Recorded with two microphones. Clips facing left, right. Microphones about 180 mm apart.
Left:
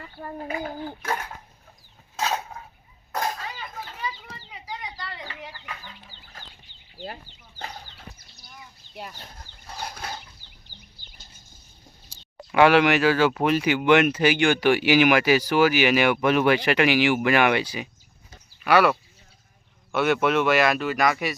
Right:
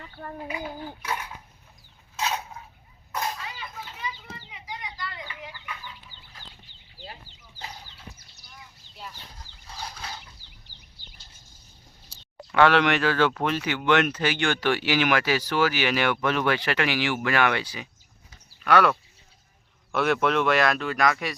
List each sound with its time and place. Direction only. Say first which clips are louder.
0.3 s dishes: left 4 dB; 50° left (ahead or behind)
2.1 s a sound: left 2 dB; 45° left (ahead or behind)
3.1 s children playing: left 3 dB; 45° left (ahead or behind)
5.4 s chicken: left 1 dB; 40° left (ahead or behind)
9.0 s chicken: left 4 dB; 60° left (ahead or behind)
12.5 s speech: left 3 dB; 10° left (ahead or behind)